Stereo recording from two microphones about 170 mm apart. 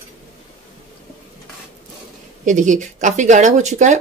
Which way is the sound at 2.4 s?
45° right (ahead or behind).